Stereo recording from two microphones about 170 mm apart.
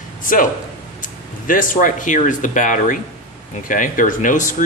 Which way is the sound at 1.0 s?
50° left (ahead or behind).